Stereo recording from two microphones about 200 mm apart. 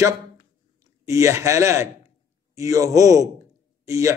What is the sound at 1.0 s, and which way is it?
A man's voice, 15° right (ahead or behind).